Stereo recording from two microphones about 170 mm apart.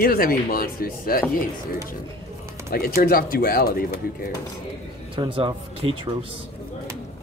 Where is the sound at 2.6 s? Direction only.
60° left (ahead or behind).